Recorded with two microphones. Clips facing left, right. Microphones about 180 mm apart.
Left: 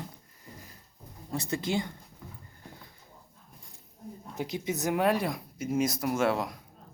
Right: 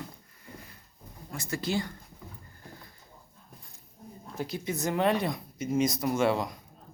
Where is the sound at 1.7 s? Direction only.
20° left (ahead or behind).